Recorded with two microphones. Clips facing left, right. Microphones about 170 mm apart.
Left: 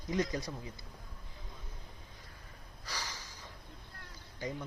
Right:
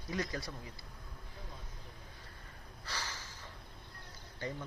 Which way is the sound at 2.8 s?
10° left (ahead or behind).